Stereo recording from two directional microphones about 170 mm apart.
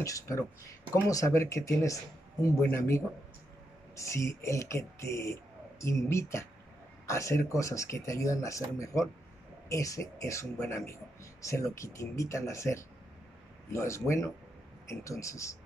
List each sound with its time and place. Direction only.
0.0 s speech: 20° left (ahead or behind)